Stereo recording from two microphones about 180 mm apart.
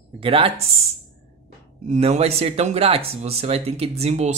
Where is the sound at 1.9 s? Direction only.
35° right (ahead or behind).